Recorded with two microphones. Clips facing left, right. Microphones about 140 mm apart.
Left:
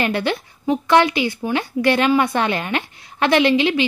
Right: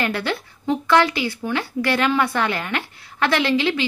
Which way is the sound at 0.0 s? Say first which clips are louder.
Left 3 dB; 20° left (ahead or behind).